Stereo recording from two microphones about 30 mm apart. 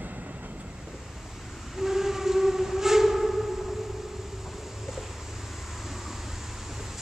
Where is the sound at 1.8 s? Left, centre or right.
Centre.